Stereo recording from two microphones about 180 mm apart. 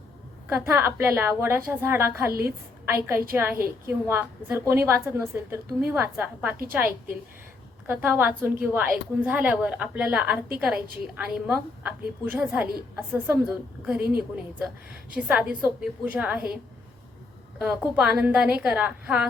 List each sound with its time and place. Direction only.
0.4 s a woman's voice: 15° right (ahead or behind)
10.8 s a woman's voice: 55° right (ahead or behind)
11.1 s a woman's voice: 10° right (ahead or behind)
17.6 s a woman's voice: 5° right (ahead or behind)